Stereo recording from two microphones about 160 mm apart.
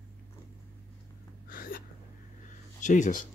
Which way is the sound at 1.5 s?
65° left (ahead or behind).